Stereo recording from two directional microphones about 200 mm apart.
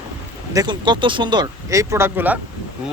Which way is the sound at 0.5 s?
20° right (ahead or behind).